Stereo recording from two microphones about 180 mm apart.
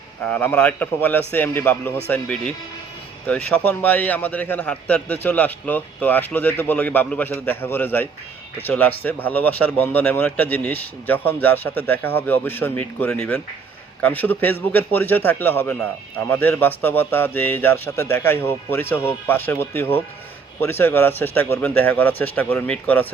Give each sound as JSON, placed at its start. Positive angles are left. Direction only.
{"t": 0.3, "sound": "a man's voice", "side_deg": 10}